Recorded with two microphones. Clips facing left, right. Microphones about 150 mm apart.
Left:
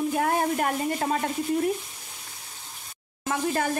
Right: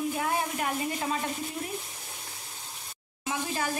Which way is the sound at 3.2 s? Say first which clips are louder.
Left 5 dB; 55° left (ahead or behind).